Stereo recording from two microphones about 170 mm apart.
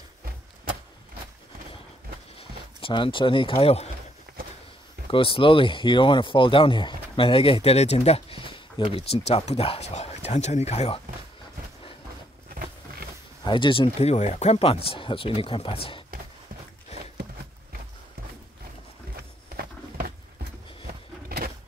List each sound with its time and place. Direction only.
2.3 s speech: 30° left (ahead or behind)
5.1 s speech: 30° left (ahead or behind)
13.4 s speech: 30° left (ahead or behind)
19.5 s a sound: 65° right (ahead or behind)